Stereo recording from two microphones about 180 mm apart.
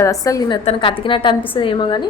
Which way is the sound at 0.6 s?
30° left (ahead or behind).